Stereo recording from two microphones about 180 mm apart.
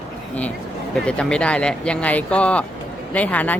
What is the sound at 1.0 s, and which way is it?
Speech, 5° left (ahead or behind).